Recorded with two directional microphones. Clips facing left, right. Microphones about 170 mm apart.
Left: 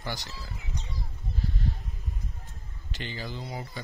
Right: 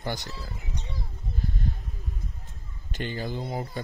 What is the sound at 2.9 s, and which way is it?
Speech, 50° right (ahead or behind).